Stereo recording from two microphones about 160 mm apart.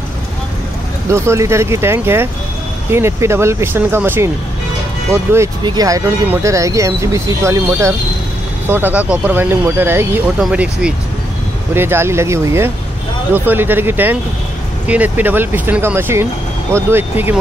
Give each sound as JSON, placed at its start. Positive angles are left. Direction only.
{"t": 1.1, "sound": "speech", "side_deg": -15}